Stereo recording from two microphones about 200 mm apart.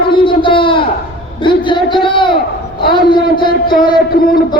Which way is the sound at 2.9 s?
25° left (ahead or behind).